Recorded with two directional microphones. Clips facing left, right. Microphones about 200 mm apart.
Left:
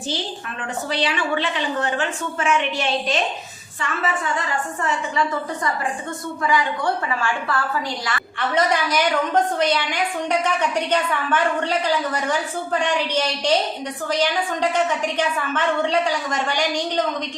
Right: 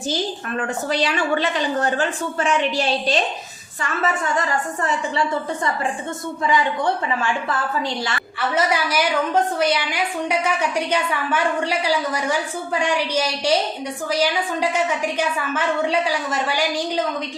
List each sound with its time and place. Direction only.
0.9 s a woman's voice: 45° right (ahead or behind)
6.4 s a woman's voice: 20° right (ahead or behind)
8.4 s a woman's voice: 5° right (ahead or behind)